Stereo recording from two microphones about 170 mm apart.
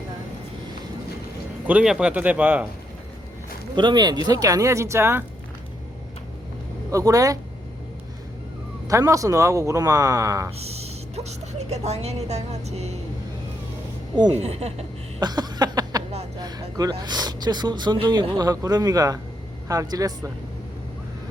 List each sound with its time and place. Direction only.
1.6 s speech: 5° right (ahead or behind)
3.8 s speech: 25° right (ahead or behind)
6.9 s speech: 20° right (ahead or behind)
8.9 s speech: 20° right (ahead or behind)
10.6 s speech: 35° right (ahead or behind)
14.3 s speech: 40° right (ahead or behind)
15.2 s a sound: 25° right (ahead or behind)
16.4 s speech: 20° right (ahead or behind)